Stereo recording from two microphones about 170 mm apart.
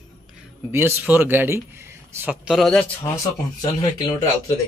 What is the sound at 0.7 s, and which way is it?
Speech, 15° right (ahead or behind).